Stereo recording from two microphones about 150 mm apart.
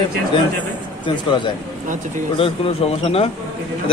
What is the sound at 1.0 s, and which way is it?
Speech, 30° left (ahead or behind).